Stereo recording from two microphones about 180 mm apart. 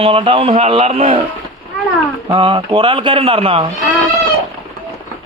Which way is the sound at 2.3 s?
30° right (ahead or behind).